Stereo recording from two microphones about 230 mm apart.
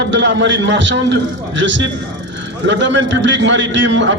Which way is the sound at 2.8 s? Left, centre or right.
Right.